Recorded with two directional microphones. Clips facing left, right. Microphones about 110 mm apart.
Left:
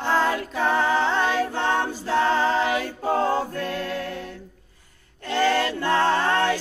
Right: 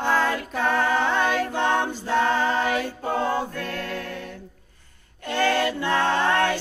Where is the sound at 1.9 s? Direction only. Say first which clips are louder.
Left 1 dB; 10° left (ahead or behind).